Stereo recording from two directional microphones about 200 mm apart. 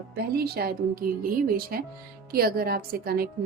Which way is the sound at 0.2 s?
50° right (ahead or behind).